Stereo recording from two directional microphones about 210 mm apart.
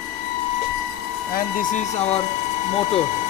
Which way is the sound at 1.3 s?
35° left (ahead or behind).